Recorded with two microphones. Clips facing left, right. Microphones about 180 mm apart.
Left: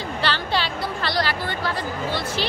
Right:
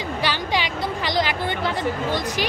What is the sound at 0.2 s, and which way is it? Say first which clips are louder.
A woman's voice: even; 15° right (ahead or behind).